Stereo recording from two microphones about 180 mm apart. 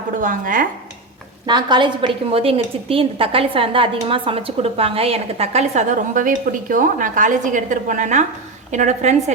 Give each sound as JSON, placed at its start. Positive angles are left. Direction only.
{"t": 0.2, "sound": "speech", "side_deg": -50}
{"t": 1.5, "sound": "a woman's voice", "side_deg": -25}